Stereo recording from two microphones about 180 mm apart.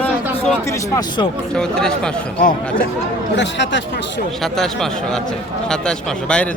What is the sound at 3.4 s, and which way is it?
Speech, 80° left.